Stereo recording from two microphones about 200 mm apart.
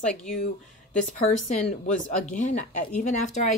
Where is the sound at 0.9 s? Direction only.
40° left (ahead or behind).